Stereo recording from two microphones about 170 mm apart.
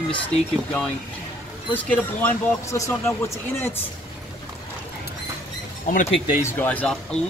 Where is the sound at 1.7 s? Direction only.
10° left (ahead or behind).